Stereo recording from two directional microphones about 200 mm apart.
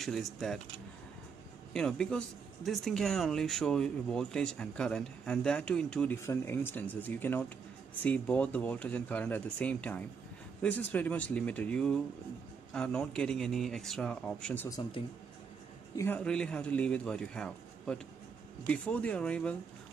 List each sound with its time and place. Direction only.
0.0 s speech: centre (ahead or behind)
1.7 s speech: 5° left (ahead or behind)
16.0 s speech: 5° left (ahead or behind)